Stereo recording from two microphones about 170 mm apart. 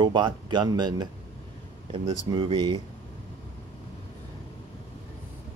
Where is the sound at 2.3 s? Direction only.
30° right (ahead or behind).